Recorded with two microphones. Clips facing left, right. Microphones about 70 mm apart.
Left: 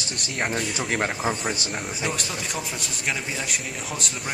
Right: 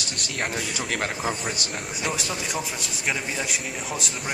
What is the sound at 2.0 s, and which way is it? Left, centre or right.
A man's voice, centre.